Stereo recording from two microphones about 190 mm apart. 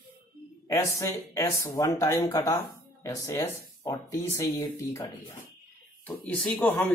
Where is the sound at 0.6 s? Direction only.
15° left (ahead or behind).